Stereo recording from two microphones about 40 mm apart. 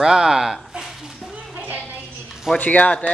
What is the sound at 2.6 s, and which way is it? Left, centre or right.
Speech, left.